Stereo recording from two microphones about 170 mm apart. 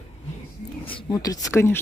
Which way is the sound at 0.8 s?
30° left (ahead or behind).